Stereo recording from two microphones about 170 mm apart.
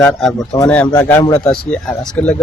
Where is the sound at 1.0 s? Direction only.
10° left (ahead or behind).